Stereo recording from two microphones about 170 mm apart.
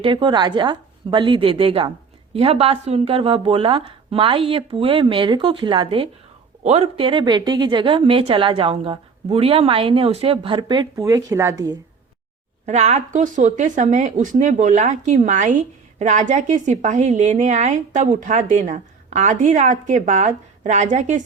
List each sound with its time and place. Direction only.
0.0 s a woman's voice: 30° right (ahead or behind)
12.6 s a woman's voice: 45° right (ahead or behind)